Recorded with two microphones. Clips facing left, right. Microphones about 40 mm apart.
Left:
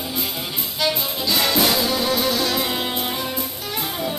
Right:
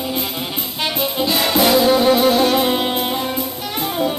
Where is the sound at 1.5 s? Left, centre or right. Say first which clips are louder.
Right 10 dB; right.